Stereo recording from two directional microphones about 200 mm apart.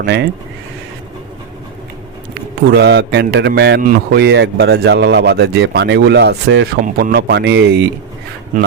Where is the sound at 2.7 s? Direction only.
55° right (ahead or behind).